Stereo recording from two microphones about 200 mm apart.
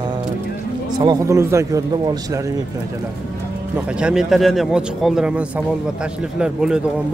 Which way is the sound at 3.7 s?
5° right (ahead or behind).